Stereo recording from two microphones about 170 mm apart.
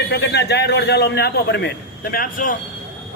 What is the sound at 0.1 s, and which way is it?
A man's voice, 75° left (ahead or behind).